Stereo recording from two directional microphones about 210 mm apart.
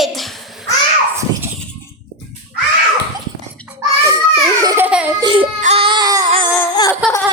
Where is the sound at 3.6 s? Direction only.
15° right (ahead or behind).